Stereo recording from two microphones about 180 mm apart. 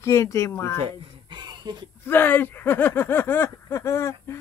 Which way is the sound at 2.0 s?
10° left (ahead or behind).